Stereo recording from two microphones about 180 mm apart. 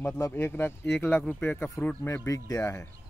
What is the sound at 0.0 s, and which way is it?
Speech, 10° left (ahead or behind).